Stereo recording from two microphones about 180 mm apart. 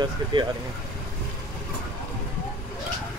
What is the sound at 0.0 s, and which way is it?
Speech, 25° right (ahead or behind).